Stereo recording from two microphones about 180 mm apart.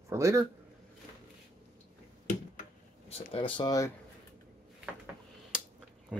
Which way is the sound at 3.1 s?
30° left (ahead or behind).